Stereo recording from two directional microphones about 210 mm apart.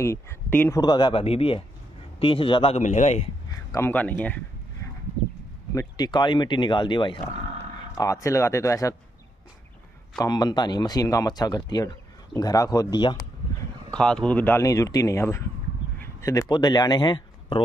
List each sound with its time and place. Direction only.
0.0 s speech: 10° left (ahead or behind); by 3.3 s 35° left (ahead or behind)
3.7 s speech: 10° left (ahead or behind)
5.8 s speech: 20° left (ahead or behind)
10.1 s speech: 20° left (ahead or behind)
13.9 s speech: 5° left (ahead or behind); by 17.6 s 20° left (ahead or behind)